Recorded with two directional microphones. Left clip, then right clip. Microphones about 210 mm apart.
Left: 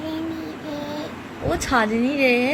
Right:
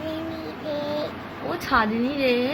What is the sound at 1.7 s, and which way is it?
Speech, 20° left (ahead or behind).